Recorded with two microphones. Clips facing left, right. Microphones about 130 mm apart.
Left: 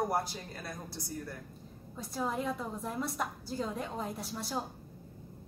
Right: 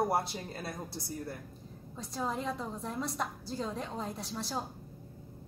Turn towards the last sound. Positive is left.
turn(degrees=0)  # may be behind; listen again after turning